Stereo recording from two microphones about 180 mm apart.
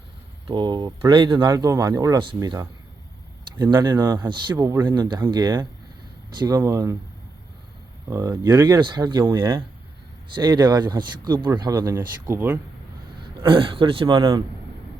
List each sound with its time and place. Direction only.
0.4 s speech: 25° right (ahead or behind)
8.1 s speech: 20° right (ahead or behind)
13.1 s a man's voice: 30° right (ahead or behind)